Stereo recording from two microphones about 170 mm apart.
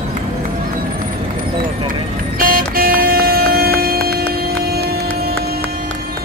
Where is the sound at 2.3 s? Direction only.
55° right (ahead or behind).